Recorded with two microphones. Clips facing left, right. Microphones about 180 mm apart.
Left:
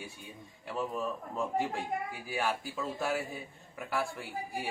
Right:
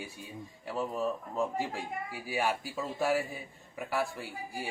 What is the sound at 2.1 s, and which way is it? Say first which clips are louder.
A man's voice: right 2 dB; 5° right (ahead or behind).